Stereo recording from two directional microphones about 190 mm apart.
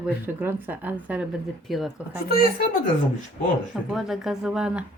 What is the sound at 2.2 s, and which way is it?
Speech, 50° left (ahead or behind).